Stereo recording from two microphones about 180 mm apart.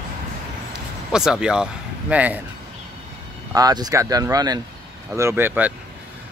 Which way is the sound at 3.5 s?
20° right (ahead or behind).